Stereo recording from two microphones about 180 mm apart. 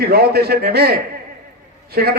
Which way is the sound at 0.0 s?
60° right (ahead or behind).